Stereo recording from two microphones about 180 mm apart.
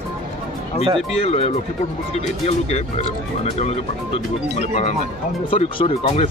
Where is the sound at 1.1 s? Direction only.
35° left (ahead or behind).